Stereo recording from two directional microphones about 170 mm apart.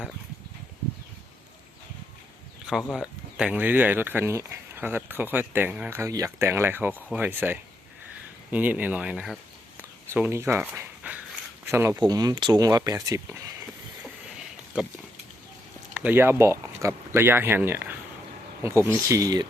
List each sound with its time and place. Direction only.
2.6 s speech: 5° right (ahead or behind)
14.8 s speech: 5° right (ahead or behind)
16.0 s speech: 10° right (ahead or behind)